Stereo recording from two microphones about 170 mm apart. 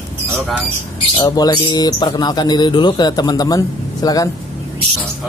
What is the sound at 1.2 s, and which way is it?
Speech, 25° left (ahead or behind).